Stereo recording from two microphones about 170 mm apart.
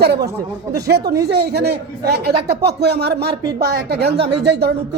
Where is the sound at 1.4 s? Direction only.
75° right (ahead or behind).